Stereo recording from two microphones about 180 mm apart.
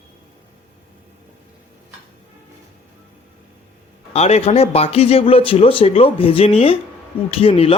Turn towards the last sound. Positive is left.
turn(degrees=35)  # may be behind; listen again after turning